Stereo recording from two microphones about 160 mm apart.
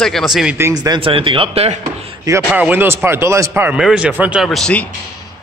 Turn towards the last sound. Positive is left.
turn(degrees=5)  # may be behind; listen again after turning